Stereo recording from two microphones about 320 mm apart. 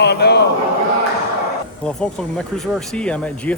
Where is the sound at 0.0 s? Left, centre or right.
Left.